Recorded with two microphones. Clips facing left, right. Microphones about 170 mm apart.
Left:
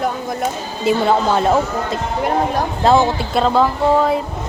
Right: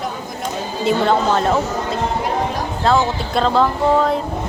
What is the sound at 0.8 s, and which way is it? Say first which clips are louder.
Speech: left 1 dB; 5° left (ahead or behind).